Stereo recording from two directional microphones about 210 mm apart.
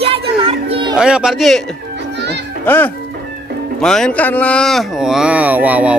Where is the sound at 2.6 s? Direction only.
10° left (ahead or behind); by 5.9 s 5° right (ahead or behind).